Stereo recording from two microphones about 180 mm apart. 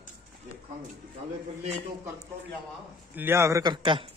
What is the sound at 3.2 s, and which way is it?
Speech, 15° right (ahead or behind).